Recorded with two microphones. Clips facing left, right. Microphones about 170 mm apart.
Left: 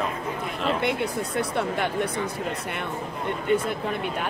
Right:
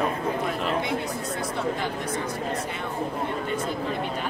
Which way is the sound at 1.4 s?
65° left (ahead or behind).